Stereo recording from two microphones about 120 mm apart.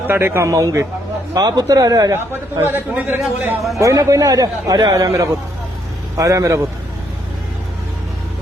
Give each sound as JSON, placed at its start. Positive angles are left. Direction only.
{"t": 0.1, "sound": "a man's voice", "side_deg": -20}
{"t": 2.3, "sound": "a man's voice", "side_deg": -20}
{"t": 3.8, "sound": "a man's voice", "side_deg": -25}